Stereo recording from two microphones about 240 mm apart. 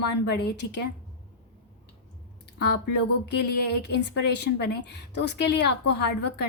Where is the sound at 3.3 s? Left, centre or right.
Left.